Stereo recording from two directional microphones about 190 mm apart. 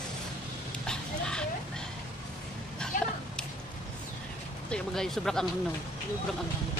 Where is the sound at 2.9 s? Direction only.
45° left (ahead or behind).